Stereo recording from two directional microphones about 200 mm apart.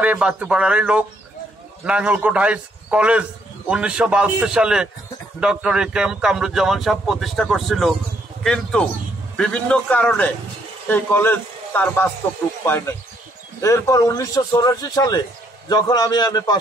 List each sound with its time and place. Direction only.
0.0 s a man's voice: 5° right (ahead or behind)
9.4 s a man's voice: 5° left (ahead or behind)